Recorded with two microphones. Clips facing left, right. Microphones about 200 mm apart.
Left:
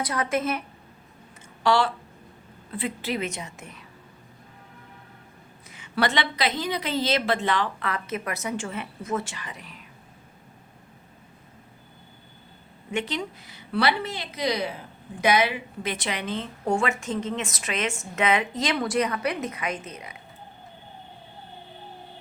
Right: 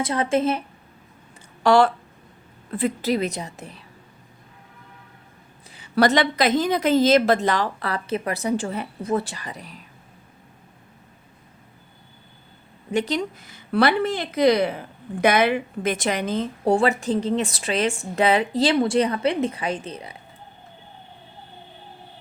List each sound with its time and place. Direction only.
0.0 s a woman's voice: 25° right (ahead or behind)
1.6 s speech: 50° right (ahead or behind)
5.7 s speech: 40° right (ahead or behind)
12.9 s a woman's voice: 40° right (ahead or behind)